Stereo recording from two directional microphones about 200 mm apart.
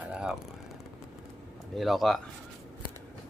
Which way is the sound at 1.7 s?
Centre (ahead or behind).